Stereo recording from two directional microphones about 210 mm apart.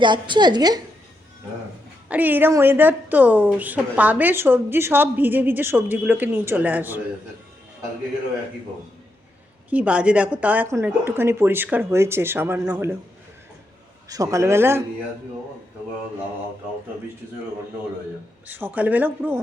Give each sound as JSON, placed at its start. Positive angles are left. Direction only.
{"t": 0.0, "sound": "a woman's voice", "side_deg": -20}
{"t": 2.0, "sound": "a woman's voice", "side_deg": -10}
{"t": 9.6, "sound": "a woman's voice", "side_deg": -5}
{"t": 14.1, "sound": "a woman's voice", "side_deg": -15}
{"t": 18.4, "sound": "a woman's voice", "side_deg": -10}